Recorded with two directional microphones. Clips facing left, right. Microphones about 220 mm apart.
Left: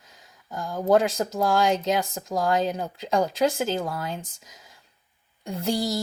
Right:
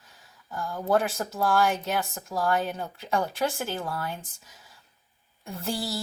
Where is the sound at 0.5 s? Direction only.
15° left (ahead or behind).